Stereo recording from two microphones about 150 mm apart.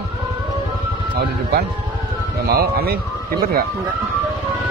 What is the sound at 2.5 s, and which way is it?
Speech, 90° right.